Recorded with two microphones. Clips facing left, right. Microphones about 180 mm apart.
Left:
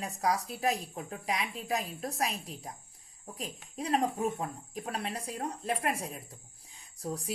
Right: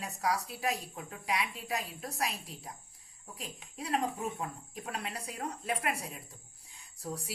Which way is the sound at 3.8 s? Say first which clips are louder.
Left 4 dB; 35° left (ahead or behind).